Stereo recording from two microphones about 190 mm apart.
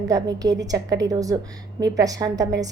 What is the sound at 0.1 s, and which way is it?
A woman's voice, 20° right (ahead or behind).